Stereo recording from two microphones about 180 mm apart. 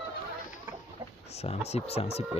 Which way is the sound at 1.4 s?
35° left (ahead or behind).